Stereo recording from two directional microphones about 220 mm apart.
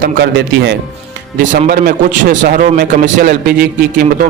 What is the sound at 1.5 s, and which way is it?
A man's voice, 35° right (ahead or behind).